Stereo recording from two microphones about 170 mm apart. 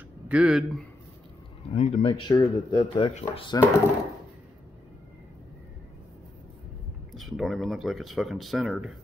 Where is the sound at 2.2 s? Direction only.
25° left (ahead or behind).